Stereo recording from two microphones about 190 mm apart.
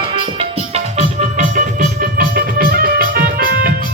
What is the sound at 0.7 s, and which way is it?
Music, 35° right (ahead or behind).